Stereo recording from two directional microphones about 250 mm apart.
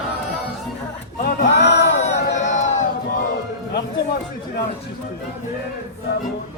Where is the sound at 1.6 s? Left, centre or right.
Left.